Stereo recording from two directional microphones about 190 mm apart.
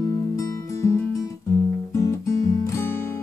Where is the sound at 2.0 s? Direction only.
15° left (ahead or behind).